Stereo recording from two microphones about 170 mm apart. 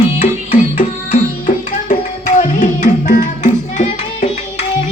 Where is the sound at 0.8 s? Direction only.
50° left (ahead or behind).